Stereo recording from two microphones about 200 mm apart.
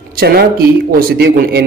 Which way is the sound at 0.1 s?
50° right (ahead or behind).